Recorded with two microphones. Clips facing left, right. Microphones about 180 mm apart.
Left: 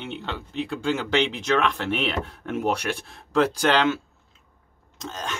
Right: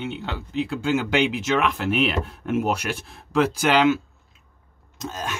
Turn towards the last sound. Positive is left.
turn(degrees=-5)  # may be behind; listen again after turning